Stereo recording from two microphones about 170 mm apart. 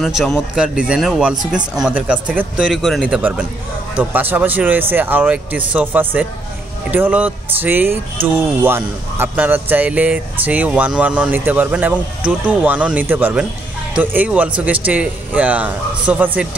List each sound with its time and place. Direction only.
0.0 s speech: centre (ahead or behind)
3.2 s speech: 10° right (ahead or behind)